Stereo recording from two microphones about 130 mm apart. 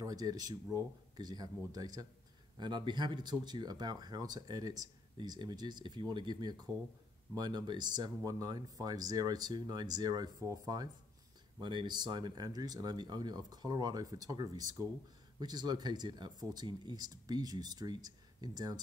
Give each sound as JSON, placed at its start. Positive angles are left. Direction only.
{"t": 0.0, "sound": "speech", "side_deg": -30}